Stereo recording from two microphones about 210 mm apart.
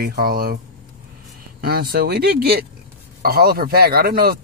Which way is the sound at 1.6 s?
45° right (ahead or behind).